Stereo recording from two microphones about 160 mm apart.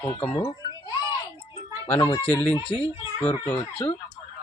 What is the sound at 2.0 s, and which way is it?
Speech, 25° left (ahead or behind).